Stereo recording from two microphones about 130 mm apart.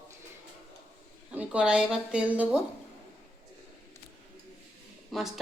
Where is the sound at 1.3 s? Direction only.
10° right (ahead or behind).